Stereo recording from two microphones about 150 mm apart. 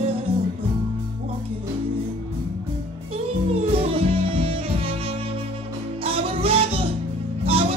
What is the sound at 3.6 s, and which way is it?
Music, 40° right (ahead or behind).